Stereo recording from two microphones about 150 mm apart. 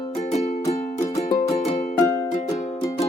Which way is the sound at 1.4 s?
50° left (ahead or behind).